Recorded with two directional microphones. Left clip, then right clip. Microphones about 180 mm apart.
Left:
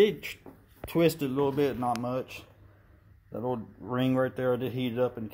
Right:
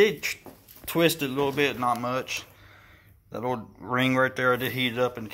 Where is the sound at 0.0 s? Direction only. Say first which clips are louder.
Right 3 dB; 15° left (ahead or behind).